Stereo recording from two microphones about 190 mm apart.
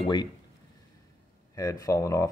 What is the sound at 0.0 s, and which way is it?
Speech, 20° left (ahead or behind).